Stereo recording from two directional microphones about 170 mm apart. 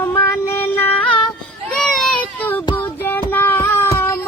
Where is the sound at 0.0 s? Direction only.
15° left (ahead or behind).